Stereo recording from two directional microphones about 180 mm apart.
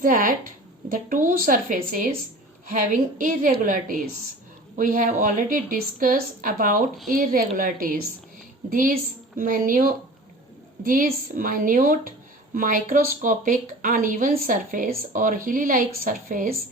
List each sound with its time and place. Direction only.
0.0 s speech: 50° right (ahead or behind)